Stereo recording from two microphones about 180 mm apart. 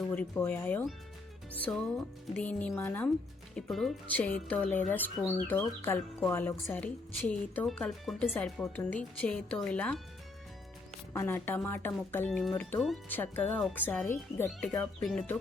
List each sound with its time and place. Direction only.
0.1 s speech: 10° left (ahead or behind)
3.5 s speech: centre (ahead or behind)
11.1 s speech: 15° left (ahead or behind)
15.0 s speech: 5° left (ahead or behind)